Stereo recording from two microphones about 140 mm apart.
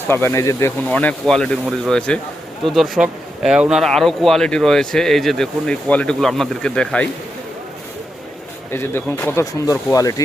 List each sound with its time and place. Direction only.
0.1 s speech: 15° left (ahead or behind)
0.9 s speech: 10° left (ahead or behind)
8.7 s speech: 15° left (ahead or behind)